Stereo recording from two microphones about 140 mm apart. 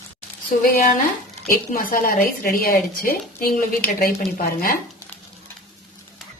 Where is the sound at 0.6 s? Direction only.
85° left.